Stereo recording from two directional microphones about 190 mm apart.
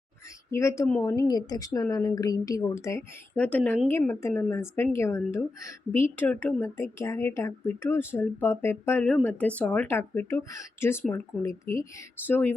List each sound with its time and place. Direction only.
0.5 s speech: 15° left (ahead or behind)